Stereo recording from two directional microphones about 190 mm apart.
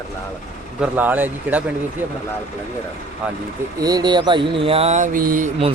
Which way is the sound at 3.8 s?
20° right (ahead or behind).